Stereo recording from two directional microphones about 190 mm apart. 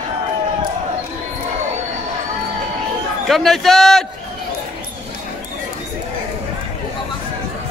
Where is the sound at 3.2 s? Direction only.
Centre (ahead or behind).